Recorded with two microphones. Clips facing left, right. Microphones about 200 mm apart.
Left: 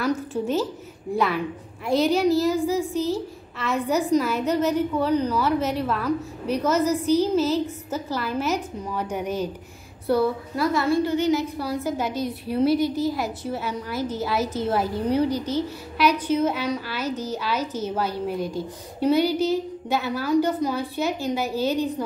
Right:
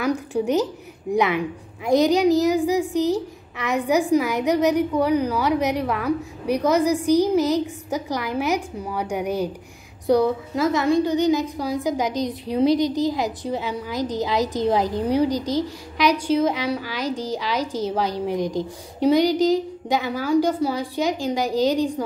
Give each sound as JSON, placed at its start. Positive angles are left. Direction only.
{"t": 0.0, "sound": "a woman's voice", "side_deg": -15}